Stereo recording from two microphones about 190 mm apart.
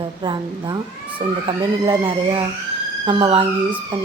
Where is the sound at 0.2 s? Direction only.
25° right (ahead or behind).